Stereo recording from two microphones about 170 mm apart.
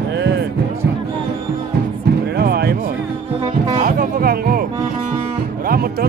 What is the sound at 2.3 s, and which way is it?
Music, 65° right (ahead or behind).